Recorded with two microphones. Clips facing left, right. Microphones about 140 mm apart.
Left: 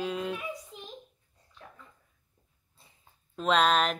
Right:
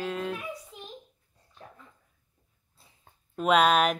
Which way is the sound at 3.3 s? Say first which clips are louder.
Right 3 dB; 10° right (ahead or behind).